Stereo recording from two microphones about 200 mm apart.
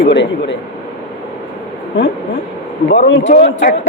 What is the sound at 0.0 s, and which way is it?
Speech, 60° left (ahead or behind).